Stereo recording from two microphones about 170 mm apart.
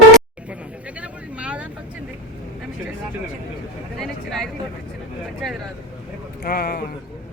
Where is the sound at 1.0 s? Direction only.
5° right (ahead or behind).